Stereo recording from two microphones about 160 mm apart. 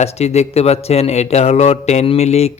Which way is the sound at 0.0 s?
40° left (ahead or behind).